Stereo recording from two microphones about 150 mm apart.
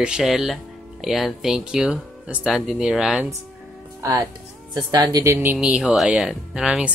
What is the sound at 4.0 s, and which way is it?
Speech, 25° right (ahead or behind).